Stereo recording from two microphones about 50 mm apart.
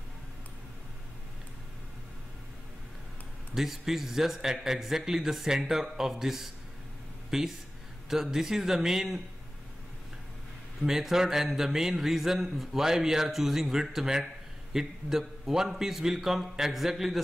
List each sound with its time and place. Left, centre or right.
3.5 s a man's voice: centre
10.8 s a man's voice: centre